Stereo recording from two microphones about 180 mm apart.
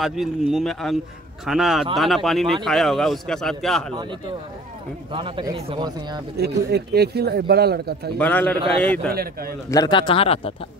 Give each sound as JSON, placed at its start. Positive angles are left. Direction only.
{"t": 0.0, "sound": "a man's voice", "side_deg": 0}
{"t": 3.9, "sound": "speech", "side_deg": -25}
{"t": 6.3, "sound": "speech", "side_deg": -65}
{"t": 8.2, "sound": "a man's voice", "side_deg": 10}
{"t": 9.1, "sound": "speech", "side_deg": -55}
{"t": 9.7, "sound": "speech", "side_deg": 25}